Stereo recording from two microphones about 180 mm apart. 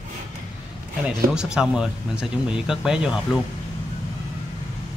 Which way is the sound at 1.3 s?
5° right (ahead or behind).